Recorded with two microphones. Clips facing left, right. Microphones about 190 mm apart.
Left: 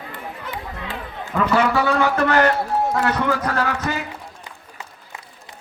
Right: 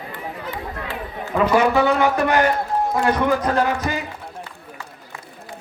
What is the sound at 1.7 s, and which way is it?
A man's voice, 20° right (ahead or behind).